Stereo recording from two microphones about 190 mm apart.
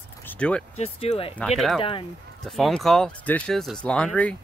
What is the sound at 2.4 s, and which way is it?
Speech, centre (ahead or behind).